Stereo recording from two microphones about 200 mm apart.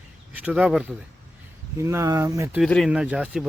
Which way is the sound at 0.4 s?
5° right (ahead or behind).